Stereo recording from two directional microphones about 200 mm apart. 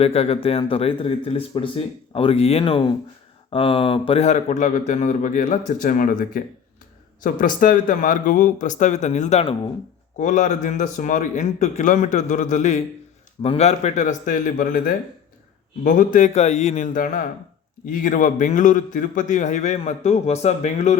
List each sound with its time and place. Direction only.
0.0 s a man's voice: 30° left (ahead or behind)